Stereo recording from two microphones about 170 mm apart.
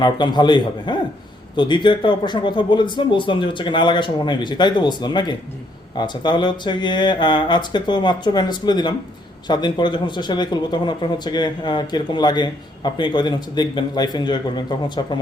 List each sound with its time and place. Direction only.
0.0 s a man's voice: 25° left (ahead or behind)